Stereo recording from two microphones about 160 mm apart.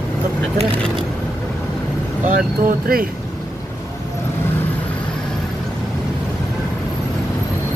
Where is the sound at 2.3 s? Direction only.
60° right (ahead or behind).